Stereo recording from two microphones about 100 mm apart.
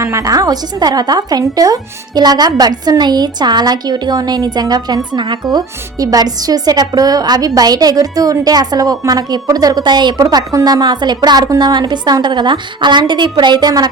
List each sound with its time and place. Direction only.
0.0 s a woman's voice: 30° right (ahead or behind)